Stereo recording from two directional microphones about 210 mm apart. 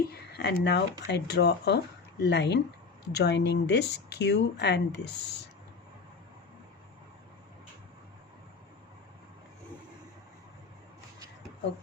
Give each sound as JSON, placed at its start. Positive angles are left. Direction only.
{"t": 0.0, "sound": "speech", "side_deg": 50}